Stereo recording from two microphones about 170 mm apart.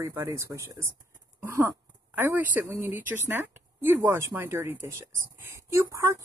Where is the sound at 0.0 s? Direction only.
20° right (ahead or behind).